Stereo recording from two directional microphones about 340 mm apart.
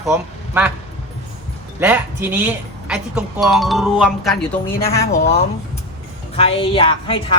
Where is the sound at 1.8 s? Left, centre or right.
Centre.